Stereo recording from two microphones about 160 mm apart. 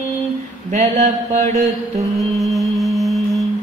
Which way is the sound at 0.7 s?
45° right (ahead or behind).